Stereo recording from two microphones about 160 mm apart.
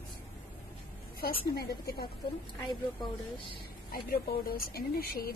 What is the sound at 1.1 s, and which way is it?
Speech, 75° left (ahead or behind).